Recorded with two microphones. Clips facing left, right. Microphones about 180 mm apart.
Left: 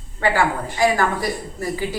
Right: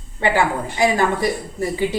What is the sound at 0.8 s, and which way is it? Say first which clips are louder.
Speech: even; 20° right (ahead or behind).